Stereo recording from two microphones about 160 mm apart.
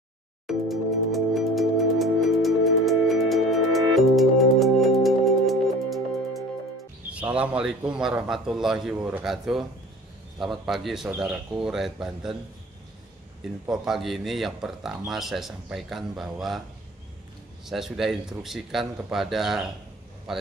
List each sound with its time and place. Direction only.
0.5 s music: centre (ahead or behind)
7.3 s a man's voice: 5° right (ahead or behind)
13.7 s a man's voice: centre (ahead or behind)
17.6 s a man's voice: centre (ahead or behind)